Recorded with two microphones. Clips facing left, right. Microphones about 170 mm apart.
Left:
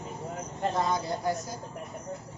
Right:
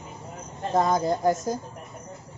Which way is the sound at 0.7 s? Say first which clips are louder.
Right 10 dB; 45° right (ahead or behind).